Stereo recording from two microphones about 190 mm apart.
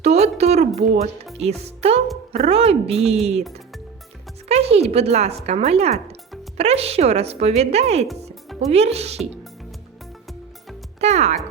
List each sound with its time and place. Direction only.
0.0 s speech: 35° right (ahead or behind)
4.4 s speech: 35° right (ahead or behind)
11.0 s speech: 35° right (ahead or behind)